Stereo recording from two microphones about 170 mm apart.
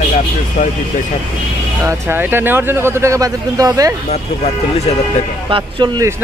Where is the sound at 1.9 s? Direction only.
15° right (ahead or behind).